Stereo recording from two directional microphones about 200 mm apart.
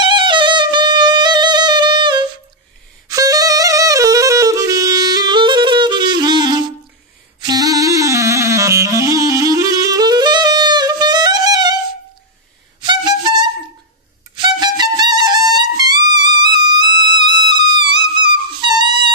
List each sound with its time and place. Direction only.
0.0 s music: 25° right (ahead or behind)
7.3 s clarinet: 20° right (ahead or behind)
12.8 s music: 20° right (ahead or behind)